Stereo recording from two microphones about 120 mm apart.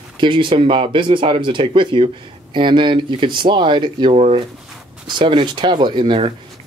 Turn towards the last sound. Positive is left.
turn(degrees=-50)  # may be behind; listen again after turning